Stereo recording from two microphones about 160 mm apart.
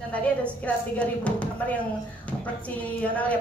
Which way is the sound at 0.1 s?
10° left (ahead or behind).